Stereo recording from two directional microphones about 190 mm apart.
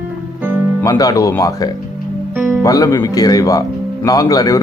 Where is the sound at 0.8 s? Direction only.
20° left (ahead or behind).